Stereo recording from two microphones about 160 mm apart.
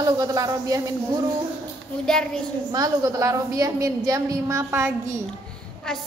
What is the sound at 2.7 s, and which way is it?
A woman's voice, 25° right (ahead or behind).